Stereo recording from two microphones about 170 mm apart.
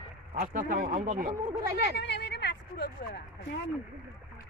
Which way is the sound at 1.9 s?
90° left.